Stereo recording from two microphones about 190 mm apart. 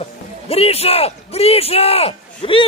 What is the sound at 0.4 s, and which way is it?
A man's voice, 30° left (ahead or behind).